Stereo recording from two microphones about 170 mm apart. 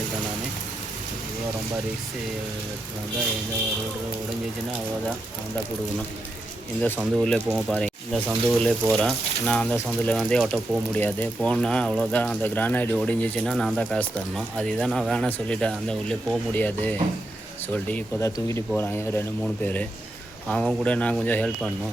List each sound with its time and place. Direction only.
7.0 s speech: centre (ahead or behind)